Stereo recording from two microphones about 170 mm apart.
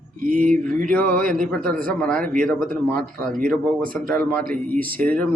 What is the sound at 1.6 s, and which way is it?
Speech, 55° right (ahead or behind).